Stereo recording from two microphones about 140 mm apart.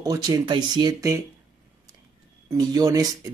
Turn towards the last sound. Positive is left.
turn(degrees=-25)  # may be behind; listen again after turning